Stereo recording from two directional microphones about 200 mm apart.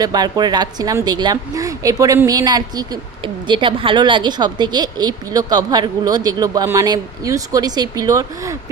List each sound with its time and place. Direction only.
0.0 s a woman's voice: 20° right (ahead or behind)